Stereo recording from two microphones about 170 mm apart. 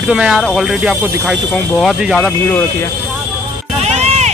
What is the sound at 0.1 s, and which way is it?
Speech, centre (ahead or behind).